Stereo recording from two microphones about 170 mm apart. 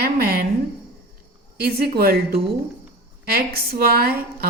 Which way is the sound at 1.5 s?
65° right (ahead or behind).